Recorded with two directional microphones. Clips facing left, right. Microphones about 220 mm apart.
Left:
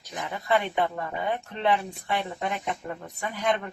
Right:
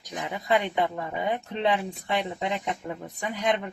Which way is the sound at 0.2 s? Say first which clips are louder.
Even; 15° right (ahead or behind).